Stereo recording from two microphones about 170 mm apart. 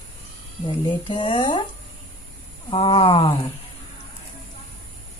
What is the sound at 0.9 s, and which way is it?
Speech, 30° left (ahead or behind).